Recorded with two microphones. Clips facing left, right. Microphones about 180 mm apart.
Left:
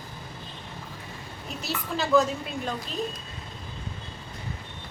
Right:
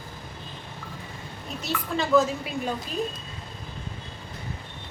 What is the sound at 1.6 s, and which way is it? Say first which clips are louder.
Speech: right 2 dB; centre (ahead or behind).